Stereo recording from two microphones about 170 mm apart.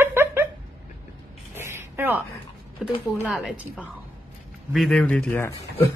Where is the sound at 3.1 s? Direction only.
5° left (ahead or behind).